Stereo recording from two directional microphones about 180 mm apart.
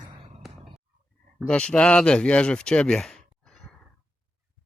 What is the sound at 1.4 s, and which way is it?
Speech, 5° left (ahead or behind).